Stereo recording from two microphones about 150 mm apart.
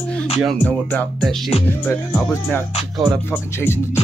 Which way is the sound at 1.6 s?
15° left (ahead or behind).